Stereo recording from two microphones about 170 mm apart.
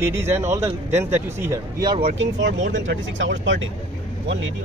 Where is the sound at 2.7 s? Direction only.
90° right.